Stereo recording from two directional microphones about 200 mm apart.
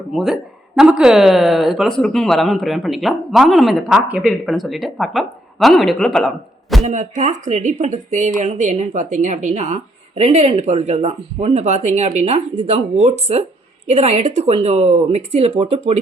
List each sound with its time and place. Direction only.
0.1 s speech: centre (ahead or behind)
6.8 s speech: 35° right (ahead or behind)